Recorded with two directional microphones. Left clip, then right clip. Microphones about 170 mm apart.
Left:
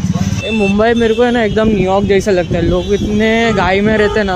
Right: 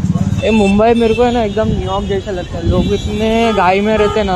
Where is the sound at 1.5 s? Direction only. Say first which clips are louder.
Left 4 dB; 35° left (ahead or behind).